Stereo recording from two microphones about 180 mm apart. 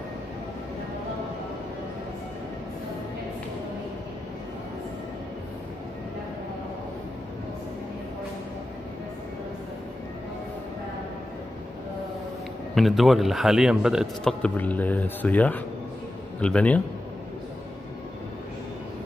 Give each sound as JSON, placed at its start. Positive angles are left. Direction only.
{"t": 12.7, "sound": "a man's voice", "side_deg": 0}